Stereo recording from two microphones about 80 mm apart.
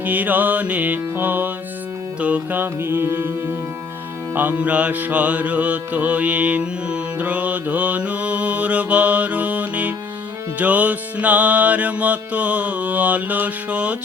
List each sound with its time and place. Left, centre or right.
0.0 s music: right